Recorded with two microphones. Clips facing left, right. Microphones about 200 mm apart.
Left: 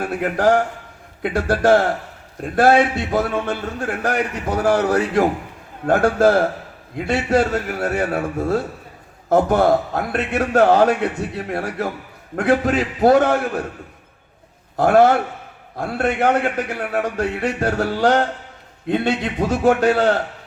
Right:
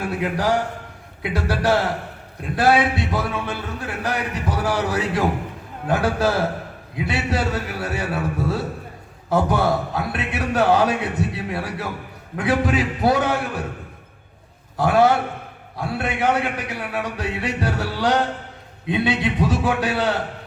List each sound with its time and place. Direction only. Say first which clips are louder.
0.0 s a man's voice: left 4 dB; 50° left (ahead or behind)
14.8 s a man's voice: left 3 dB; 50° left (ahead or behind)